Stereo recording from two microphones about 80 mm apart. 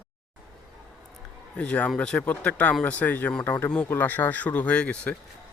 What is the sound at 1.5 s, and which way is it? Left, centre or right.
Speech, centre.